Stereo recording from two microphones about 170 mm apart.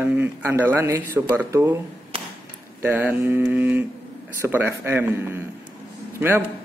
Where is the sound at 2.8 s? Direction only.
10° right (ahead or behind).